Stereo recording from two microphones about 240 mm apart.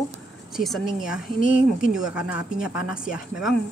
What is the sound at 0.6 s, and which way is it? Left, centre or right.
Speech, centre.